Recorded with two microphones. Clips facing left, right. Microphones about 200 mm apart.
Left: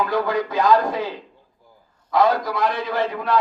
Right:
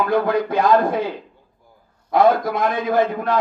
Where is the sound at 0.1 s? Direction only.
50° right (ahead or behind).